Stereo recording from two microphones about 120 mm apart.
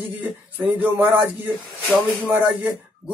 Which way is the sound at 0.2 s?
15° right (ahead or behind).